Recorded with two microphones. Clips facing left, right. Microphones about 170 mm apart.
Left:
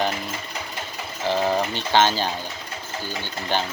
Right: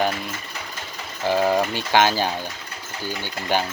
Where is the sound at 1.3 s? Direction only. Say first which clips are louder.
Right 2 dB; 10° right (ahead or behind).